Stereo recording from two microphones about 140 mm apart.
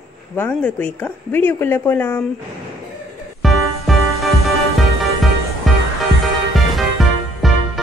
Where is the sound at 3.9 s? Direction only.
Centre (ahead or behind).